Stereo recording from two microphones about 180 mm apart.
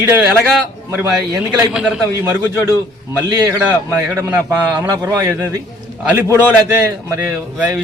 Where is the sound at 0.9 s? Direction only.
10° right (ahead or behind).